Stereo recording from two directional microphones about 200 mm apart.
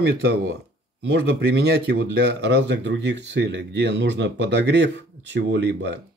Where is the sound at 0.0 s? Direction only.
55° right (ahead or behind).